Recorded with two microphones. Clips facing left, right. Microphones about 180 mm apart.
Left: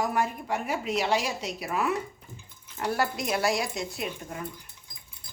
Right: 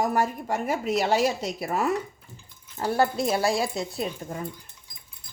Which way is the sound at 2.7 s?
30° right (ahead or behind).